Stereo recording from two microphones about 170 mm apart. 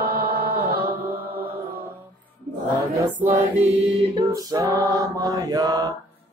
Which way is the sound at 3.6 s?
35° right (ahead or behind).